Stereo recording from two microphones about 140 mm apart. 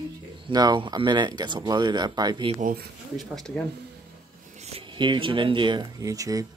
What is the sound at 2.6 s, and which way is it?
Speech, 90° right.